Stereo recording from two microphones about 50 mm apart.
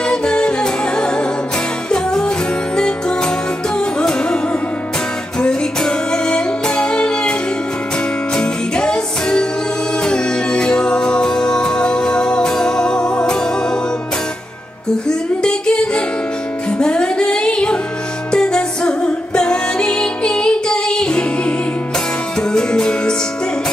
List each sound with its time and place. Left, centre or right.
0.0 s music: centre
8.4 s music: centre
15.0 s music: centre